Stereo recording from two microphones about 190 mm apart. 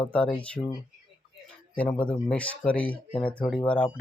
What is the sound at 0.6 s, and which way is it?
Speech, 10° left (ahead or behind).